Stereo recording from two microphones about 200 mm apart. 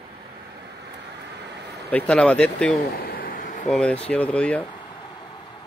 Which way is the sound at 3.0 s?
45° left (ahead or behind).